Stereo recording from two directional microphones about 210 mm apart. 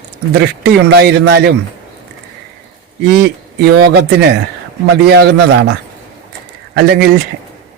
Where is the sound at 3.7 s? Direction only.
50° right (ahead or behind).